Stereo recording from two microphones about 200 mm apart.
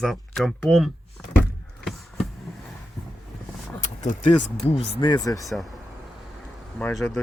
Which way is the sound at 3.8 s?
40° left (ahead or behind).